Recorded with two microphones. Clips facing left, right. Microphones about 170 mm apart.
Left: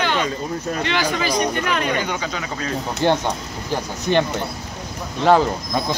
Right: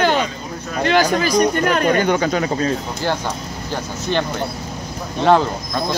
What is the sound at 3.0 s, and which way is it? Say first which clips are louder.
Speech: left 6 dB; 25° left (ahead or behind).